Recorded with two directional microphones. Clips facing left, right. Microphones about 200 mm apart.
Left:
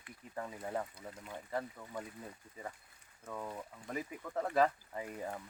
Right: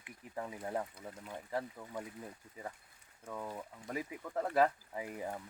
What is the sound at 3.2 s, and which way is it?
Speech, 5° right (ahead or behind).